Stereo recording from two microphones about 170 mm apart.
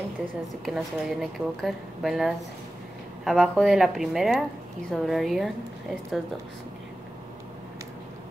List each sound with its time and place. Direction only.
0.7 s a woman's voice: centre (ahead or behind)